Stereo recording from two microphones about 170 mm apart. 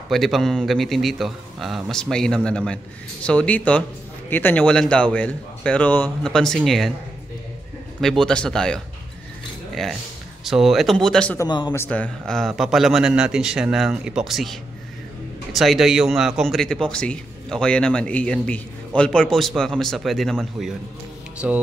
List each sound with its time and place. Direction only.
0.1 s a man's voice: centre (ahead or behind)
8.0 s a man's voice: 5° left (ahead or behind)
10.4 s a man's voice: centre (ahead or behind)
11.3 s speech: 25° left (ahead or behind)
11.7 s a man's voice: 10° left (ahead or behind); by 21.6 s 5° right (ahead or behind)